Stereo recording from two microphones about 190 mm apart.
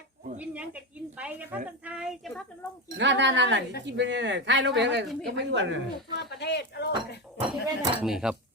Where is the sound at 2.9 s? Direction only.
70° right (ahead or behind).